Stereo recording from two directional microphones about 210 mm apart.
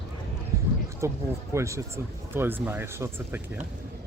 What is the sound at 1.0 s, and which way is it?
Speech, 15° right (ahead or behind).